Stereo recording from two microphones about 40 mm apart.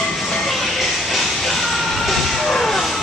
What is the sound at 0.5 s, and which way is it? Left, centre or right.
Music, centre.